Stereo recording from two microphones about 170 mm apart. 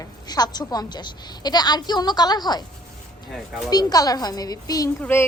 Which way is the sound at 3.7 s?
25° left (ahead or behind).